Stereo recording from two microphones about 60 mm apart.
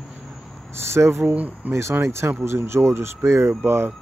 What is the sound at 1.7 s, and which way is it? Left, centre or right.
Speech, right.